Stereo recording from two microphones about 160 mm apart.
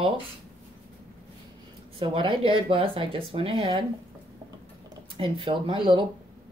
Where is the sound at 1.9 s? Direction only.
30° right (ahead or behind).